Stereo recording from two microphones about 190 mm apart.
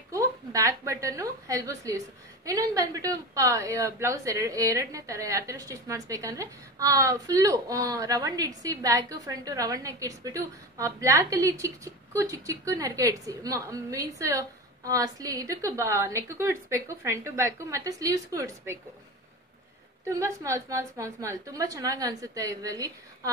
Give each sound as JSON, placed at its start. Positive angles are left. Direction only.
{"t": 0.1, "sound": "a woman's voice", "side_deg": -15}
{"t": 20.2, "sound": "a woman's voice", "side_deg": -15}